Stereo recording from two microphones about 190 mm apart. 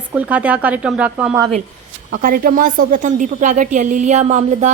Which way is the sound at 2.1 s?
45° right (ahead or behind).